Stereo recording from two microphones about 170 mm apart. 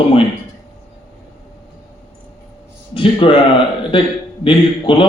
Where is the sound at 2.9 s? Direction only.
30° left (ahead or behind).